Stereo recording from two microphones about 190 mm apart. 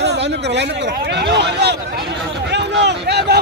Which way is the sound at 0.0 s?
65° right (ahead or behind).